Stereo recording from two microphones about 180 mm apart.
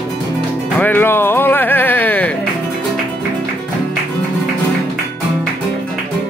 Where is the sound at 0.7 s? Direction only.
10° left (ahead or behind).